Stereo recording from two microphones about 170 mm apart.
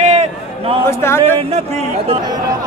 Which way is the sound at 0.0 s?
40° right (ahead or behind).